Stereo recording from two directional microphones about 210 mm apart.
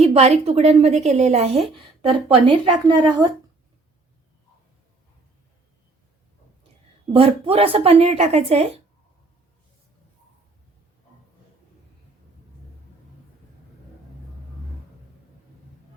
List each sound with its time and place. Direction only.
0.0 s a woman's voice: 30° right (ahead or behind)
7.1 s a woman's voice: 25° right (ahead or behind)